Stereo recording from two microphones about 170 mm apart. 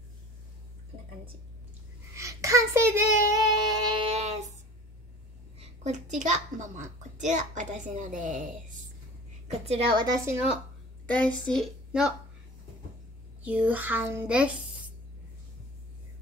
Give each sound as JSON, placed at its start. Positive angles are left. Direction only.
{"t": 2.1, "sound": "child singing", "side_deg": -20}
{"t": 4.1, "sound": "child singing", "side_deg": -40}
{"t": 5.6, "sound": "a woman's voice", "side_deg": -45}
{"t": 9.5, "sound": "a woman's voice", "side_deg": -35}
{"t": 10.2, "sound": "a child's voice", "side_deg": -15}
{"t": 11.1, "sound": "a woman's voice", "side_deg": 10}
{"t": 13.4, "sound": "a child's voice", "side_deg": -10}